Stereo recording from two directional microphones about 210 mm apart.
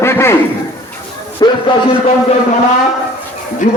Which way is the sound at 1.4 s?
20° left (ahead or behind).